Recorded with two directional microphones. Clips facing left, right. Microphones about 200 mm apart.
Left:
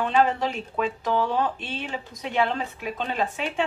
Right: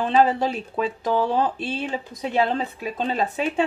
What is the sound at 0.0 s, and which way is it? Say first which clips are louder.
Speech: right 3 dB; 35° right (ahead or behind).